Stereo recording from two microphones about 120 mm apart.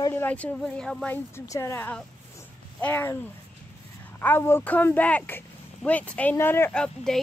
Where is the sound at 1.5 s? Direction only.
25° left (ahead or behind).